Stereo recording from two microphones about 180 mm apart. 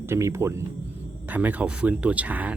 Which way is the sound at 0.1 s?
15° right (ahead or behind).